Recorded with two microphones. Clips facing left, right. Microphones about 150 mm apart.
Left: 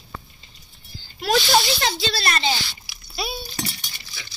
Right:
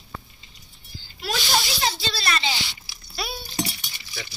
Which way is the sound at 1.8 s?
70° left (ahead or behind).